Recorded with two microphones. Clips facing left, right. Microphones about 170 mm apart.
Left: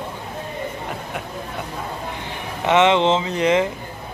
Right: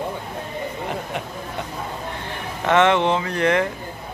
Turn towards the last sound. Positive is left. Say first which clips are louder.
# left 2 dB
turn(degrees=20)  # may be behind; listen again after turning